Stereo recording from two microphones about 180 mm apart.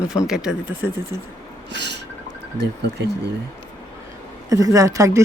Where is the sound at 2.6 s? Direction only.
75° right (ahead or behind).